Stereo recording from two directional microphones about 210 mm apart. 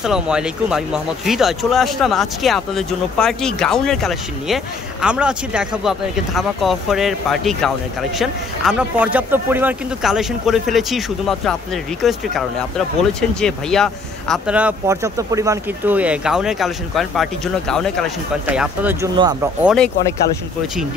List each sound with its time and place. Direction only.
0.0 s speech: 5° right (ahead or behind)
19.1 s speech: 20° right (ahead or behind)
19.6 s speech: centre (ahead or behind)